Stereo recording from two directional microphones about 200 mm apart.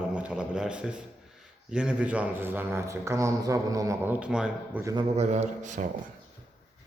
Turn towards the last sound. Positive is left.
turn(degrees=-40)  # may be behind; listen again after turning